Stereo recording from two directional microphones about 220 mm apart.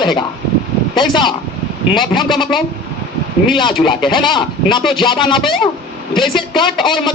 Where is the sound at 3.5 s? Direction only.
20° left (ahead or behind).